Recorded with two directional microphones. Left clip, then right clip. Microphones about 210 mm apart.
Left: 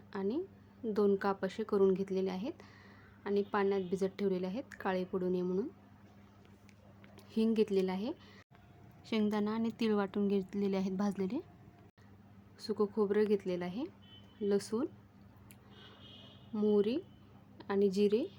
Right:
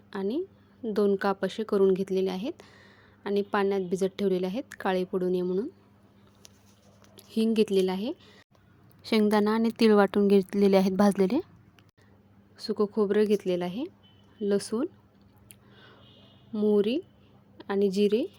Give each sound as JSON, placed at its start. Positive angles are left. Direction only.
{"t": 0.1, "sound": "a woman's voice", "side_deg": -25}
{"t": 7.2, "sound": "a woman's voice", "side_deg": -25}
{"t": 12.5, "sound": "speech", "side_deg": -25}
{"t": 16.5, "sound": "speech", "side_deg": -20}